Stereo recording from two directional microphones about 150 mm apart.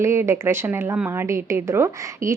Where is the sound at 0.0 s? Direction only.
15° right (ahead or behind).